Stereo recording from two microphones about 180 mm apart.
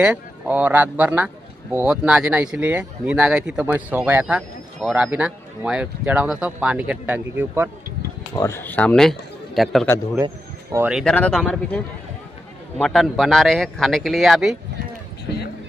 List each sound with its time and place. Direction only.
0.0 s a man's voice: 5° right (ahead or behind)
8.4 s speech: 15° left (ahead or behind)
10.2 s a sound: 15° right (ahead or behind)
10.9 s speech: 5° right (ahead or behind)